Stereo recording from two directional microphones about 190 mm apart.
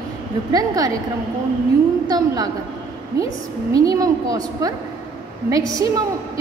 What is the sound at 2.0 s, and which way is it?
Speech, 20° right (ahead or behind).